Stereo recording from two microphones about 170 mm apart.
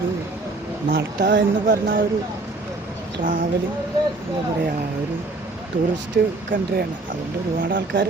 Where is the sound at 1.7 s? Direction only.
55° right (ahead or behind).